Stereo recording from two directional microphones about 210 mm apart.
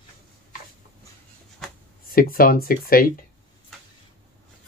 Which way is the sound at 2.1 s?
45° left (ahead or behind).